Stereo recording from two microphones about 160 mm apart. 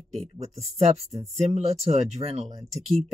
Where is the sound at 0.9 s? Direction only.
40° right (ahead or behind).